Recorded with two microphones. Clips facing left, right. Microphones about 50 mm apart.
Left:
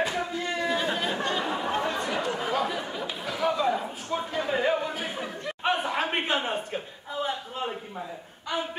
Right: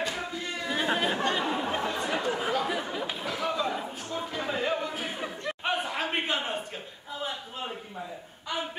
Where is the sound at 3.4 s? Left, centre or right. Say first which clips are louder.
Left 6 dB; centre.